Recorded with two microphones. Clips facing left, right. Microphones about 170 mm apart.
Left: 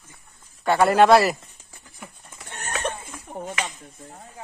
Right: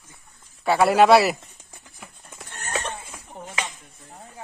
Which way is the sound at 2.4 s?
60° left (ahead or behind).